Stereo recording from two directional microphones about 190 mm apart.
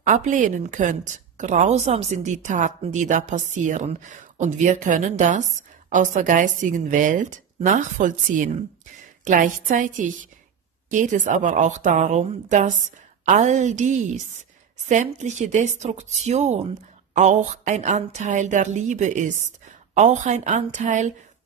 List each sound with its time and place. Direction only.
0.0 s a woman's voice: 40° right (ahead or behind)